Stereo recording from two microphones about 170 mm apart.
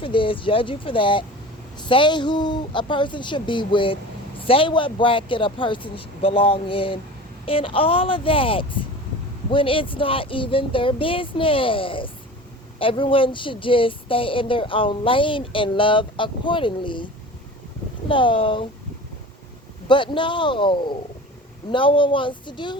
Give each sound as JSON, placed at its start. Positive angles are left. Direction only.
{"t": 0.0, "sound": "a woman's voice", "side_deg": 30}
{"t": 18.1, "sound": "a woman's voice", "side_deg": 30}
{"t": 19.9, "sound": "a woman's voice", "side_deg": 30}